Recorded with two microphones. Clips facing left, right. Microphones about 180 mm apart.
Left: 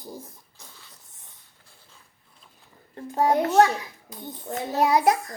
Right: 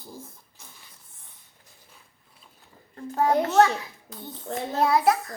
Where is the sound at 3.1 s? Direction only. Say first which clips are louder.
Left 1 dB; 15° left (ahead or behind).